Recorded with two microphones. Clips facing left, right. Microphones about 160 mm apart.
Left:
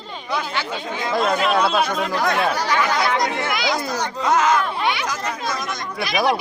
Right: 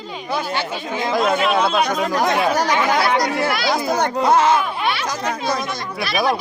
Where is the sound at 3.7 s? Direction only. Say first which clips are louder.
Right 5 dB; 55° right (ahead or behind).